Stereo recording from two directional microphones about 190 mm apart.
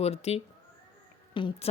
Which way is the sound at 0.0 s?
35° left (ahead or behind).